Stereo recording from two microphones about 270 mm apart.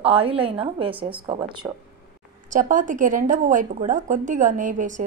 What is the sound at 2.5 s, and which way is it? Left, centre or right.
A woman's voice, right.